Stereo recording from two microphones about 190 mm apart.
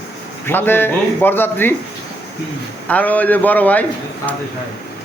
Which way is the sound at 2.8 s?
10° left (ahead or behind).